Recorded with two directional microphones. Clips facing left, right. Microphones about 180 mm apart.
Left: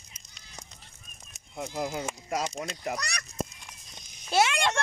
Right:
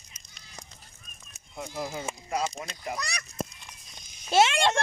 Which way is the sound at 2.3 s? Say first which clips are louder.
Right 1 dB; 80° left.